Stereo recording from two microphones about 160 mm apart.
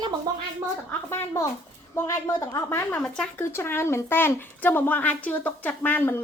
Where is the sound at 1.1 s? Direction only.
15° left (ahead or behind).